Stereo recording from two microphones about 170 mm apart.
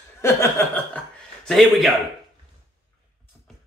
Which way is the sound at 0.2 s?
15° left (ahead or behind).